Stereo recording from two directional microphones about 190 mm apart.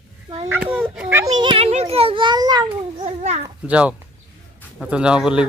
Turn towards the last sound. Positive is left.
turn(degrees=-5)  # may be behind; listen again after turning